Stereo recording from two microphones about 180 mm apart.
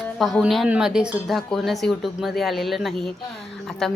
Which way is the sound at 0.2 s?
Centre (ahead or behind).